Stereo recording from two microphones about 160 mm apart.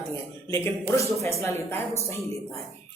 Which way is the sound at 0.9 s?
20° left (ahead or behind).